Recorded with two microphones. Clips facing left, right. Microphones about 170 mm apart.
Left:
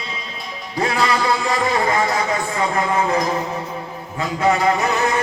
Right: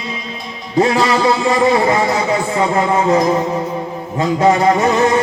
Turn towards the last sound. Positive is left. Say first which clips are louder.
# right 6 dB
turn(degrees=-25)  # may be behind; listen again after turning